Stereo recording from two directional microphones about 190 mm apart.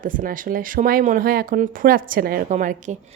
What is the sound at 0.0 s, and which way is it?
Speech, 45° right (ahead or behind).